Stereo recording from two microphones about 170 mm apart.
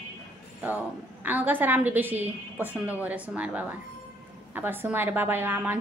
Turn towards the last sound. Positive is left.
turn(degrees=-10)  # may be behind; listen again after turning